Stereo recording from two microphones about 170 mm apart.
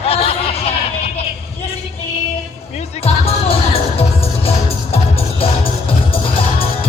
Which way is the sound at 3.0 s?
35° left (ahead or behind).